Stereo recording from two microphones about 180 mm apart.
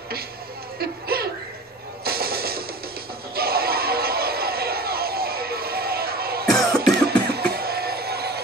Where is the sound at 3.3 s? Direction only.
60° right (ahead or behind).